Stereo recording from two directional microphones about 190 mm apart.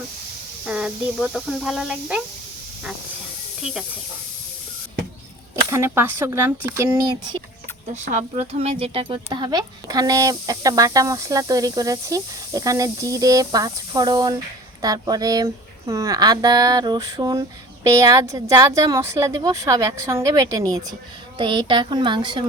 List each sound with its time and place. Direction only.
0.6 s speech: 5° right (ahead or behind)
5.7 s a woman's voice: 15° right (ahead or behind)
8.1 s a woman's voice: 35° right (ahead or behind)